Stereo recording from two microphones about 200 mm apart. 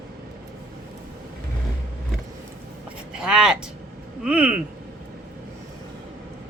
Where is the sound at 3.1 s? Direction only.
5° right (ahead or behind).